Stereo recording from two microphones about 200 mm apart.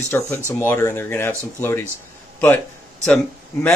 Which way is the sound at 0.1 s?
15° left (ahead or behind).